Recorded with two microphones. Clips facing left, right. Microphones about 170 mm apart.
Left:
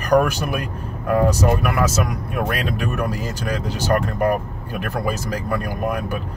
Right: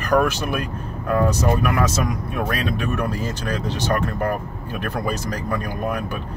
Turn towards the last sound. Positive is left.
turn(degrees=10)  # may be behind; listen again after turning